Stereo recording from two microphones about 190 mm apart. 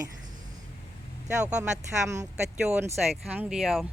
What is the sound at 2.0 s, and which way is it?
Speech, 15° right (ahead or behind).